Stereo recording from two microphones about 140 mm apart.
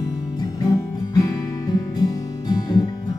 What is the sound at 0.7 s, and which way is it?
Music, 25° left (ahead or behind).